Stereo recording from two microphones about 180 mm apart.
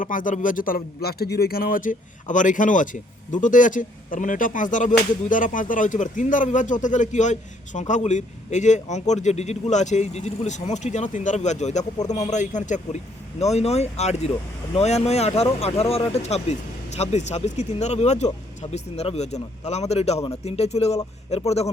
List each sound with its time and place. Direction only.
0.0 s speech: 45° left (ahead or behind)